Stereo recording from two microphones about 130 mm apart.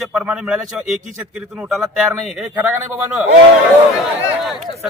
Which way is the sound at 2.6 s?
15° right (ahead or behind).